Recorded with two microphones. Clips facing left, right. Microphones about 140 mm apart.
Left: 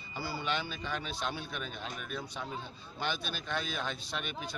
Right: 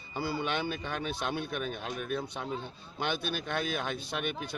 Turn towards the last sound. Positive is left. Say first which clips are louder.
# right 4 dB
turn(degrees=-55)  # may be behind; listen again after turning